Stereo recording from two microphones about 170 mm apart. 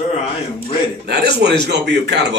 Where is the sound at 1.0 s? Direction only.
70° right (ahead or behind).